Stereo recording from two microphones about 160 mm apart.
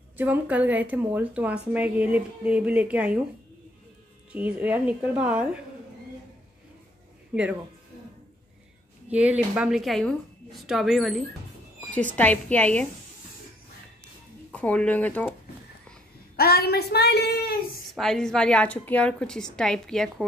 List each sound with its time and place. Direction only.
0.2 s a woman's voice: 10° right (ahead or behind)
4.3 s a woman's voice: 10° right (ahead or behind)
7.3 s a woman's voice: 10° right (ahead or behind)
9.1 s a woman's voice: 10° right (ahead or behind); by 12.8 s 10° left (ahead or behind)
14.5 s a woman's voice: 10° left (ahead or behind)
16.3 s a woman's voice: 75° left (ahead or behind)
17.9 s a woman's voice: 5° left (ahead or behind)